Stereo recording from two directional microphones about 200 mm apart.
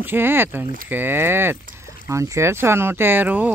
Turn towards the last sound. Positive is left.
turn(degrees=-10)  # may be behind; listen again after turning